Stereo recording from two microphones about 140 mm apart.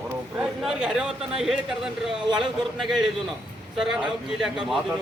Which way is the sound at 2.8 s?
5° right (ahead or behind).